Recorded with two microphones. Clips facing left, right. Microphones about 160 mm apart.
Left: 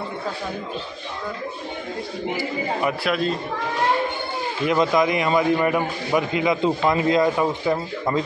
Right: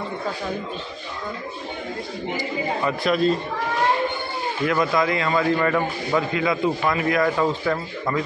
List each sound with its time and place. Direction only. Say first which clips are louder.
2.8 s speech: right 3 dB; 5° left (ahead or behind)
4.6 s a man's voice: left 2 dB; 20° left (ahead or behind)